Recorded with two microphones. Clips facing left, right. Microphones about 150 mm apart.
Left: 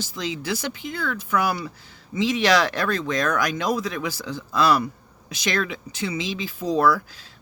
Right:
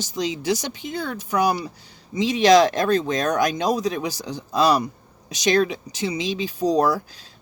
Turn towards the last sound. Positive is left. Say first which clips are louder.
# right 1 dB
turn(degrees=-40)  # may be behind; listen again after turning